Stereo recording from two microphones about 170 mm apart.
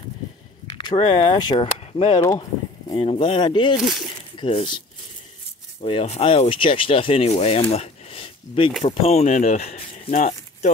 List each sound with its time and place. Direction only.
0.7 s speech: 25° left (ahead or behind)
5.8 s speech: 35° left (ahead or behind)
7.7 s a sound: 35° left (ahead or behind)
8.8 s speech: 35° left (ahead or behind)